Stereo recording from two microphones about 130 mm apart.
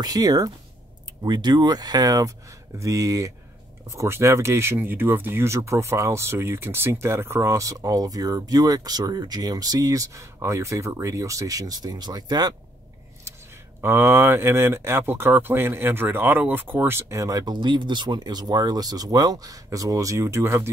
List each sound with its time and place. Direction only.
0.0 s speech: 30° right (ahead or behind)
13.7 s speech: 20° right (ahead or behind)